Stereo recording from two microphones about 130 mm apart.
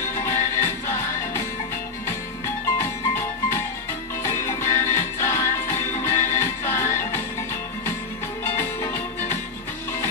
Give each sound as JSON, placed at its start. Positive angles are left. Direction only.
{"t": 0.1, "sound": "music", "side_deg": 20}
{"t": 8.5, "sound": "music", "side_deg": 20}